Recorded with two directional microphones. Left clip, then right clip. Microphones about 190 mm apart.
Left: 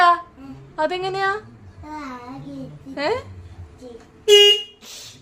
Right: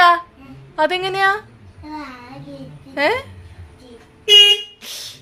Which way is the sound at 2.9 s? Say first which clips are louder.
Right 5 dB; 20° right (ahead or behind).